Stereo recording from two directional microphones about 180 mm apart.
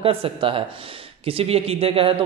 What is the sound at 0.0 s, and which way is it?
A man's voice, 30° right (ahead or behind).